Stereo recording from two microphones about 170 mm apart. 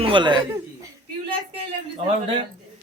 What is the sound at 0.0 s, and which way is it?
Speech, 30° right (ahead or behind).